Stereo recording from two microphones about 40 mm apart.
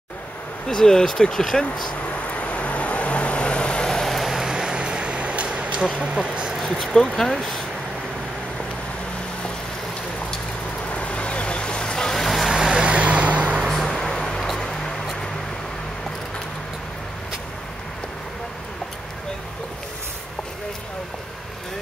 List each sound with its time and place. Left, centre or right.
0.7 s speech: centre
2.3 s vehicle: left
4.0 s vehicle: centre; by 5.9 s right
5.9 s speech: right
6.6 s speech: centre
10.9 s vehicle: left; by 12.2 s centre
12.2 s vehicle: centre
12.4 s vehicle: centre
12.8 s vehicle: right
13.7 s vehicle: centre
13.9 s a sound: centre